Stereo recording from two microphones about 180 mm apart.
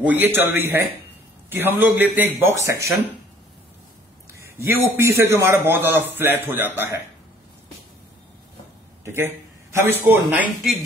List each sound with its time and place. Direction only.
0.0 s a man's voice: 10° right (ahead or behind)
2.4 s a man's voice: 15° right (ahead or behind)
4.3 s a man's voice: 15° right (ahead or behind)
9.0 s a man's voice: 15° right (ahead or behind)